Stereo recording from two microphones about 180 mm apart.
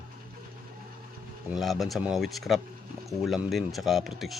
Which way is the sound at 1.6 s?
Centre (ahead or behind).